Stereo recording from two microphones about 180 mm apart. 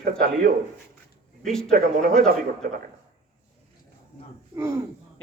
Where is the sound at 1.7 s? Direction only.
60° right (ahead or behind).